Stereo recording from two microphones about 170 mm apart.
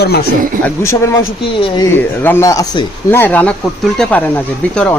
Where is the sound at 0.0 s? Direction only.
70° left (ahead or behind).